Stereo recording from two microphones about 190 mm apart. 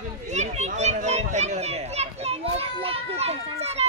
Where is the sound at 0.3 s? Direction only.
35° right (ahead or behind).